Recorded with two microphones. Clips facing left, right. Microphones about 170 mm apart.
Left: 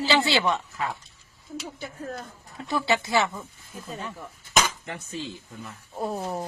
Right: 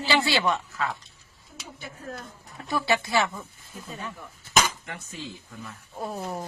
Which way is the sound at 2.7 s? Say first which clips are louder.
Left 1 dB; 20° left (ahead or behind).